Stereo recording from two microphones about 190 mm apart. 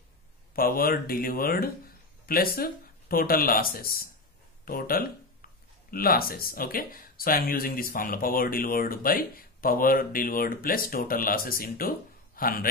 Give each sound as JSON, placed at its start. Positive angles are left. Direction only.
{"t": 0.6, "sound": "speech", "side_deg": 50}